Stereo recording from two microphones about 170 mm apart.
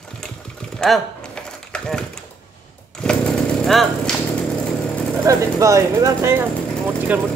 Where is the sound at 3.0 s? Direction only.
5° left (ahead or behind).